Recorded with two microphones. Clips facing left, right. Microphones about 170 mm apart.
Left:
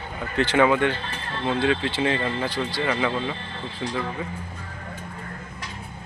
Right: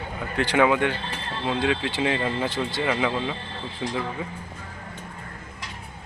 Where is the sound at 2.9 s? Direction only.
10° right (ahead or behind).